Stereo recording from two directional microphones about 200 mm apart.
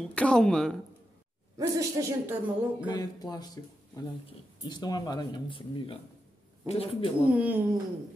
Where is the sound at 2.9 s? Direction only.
20° left (ahead or behind).